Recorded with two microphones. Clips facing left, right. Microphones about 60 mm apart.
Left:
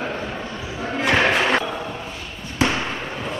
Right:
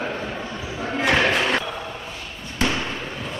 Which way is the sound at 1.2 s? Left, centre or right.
Centre.